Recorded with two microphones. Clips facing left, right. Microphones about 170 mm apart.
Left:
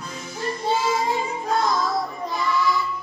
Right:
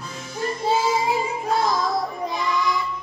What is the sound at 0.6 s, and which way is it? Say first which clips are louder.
Child singing: right 1 dB; 10° right (ahead or behind).